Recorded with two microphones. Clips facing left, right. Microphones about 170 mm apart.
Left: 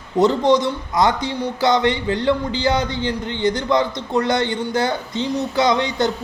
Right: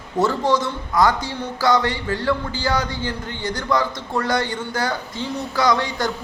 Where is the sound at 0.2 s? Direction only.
20° left (ahead or behind).